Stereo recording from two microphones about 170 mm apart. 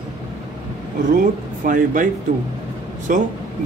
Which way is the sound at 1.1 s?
50° right (ahead or behind).